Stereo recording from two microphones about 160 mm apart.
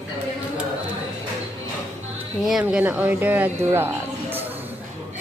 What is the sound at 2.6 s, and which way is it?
Speech, 10° right (ahead or behind).